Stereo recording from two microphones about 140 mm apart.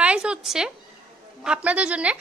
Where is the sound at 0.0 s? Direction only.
5° right (ahead or behind).